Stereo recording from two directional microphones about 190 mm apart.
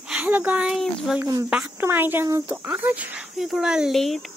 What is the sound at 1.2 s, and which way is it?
Speech, 15° right (ahead or behind).